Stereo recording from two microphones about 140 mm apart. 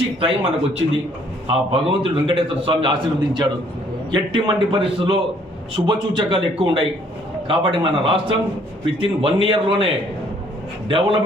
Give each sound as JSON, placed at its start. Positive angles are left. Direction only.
{"t": 0.2, "sound": "a man's voice", "side_deg": -40}